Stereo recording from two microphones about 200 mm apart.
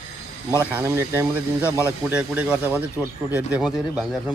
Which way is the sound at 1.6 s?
15° left (ahead or behind).